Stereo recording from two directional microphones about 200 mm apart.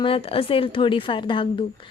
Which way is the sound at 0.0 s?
30° left (ahead or behind).